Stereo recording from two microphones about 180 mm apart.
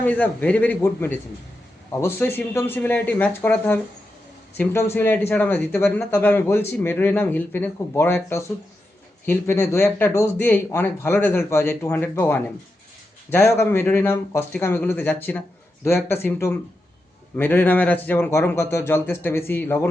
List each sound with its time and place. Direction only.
0.0 s speech: 10° left (ahead or behind)